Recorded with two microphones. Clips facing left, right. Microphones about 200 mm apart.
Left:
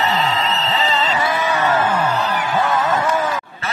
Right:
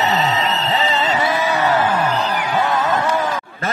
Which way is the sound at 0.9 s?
25° right (ahead or behind).